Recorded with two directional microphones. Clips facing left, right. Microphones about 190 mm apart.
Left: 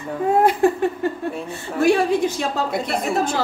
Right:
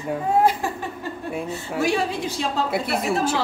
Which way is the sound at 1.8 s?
55° left (ahead or behind).